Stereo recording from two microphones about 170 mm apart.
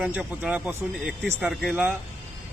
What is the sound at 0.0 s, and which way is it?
Speech, 5° right (ahead or behind).